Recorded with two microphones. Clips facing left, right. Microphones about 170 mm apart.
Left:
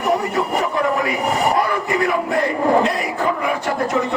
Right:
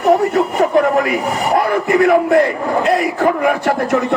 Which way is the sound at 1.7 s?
55° right (ahead or behind).